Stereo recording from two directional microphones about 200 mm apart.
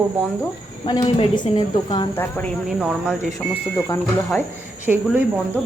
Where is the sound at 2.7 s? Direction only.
5° right (ahead or behind).